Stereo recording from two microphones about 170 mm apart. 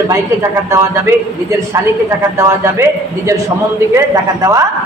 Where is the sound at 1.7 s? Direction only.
20° right (ahead or behind).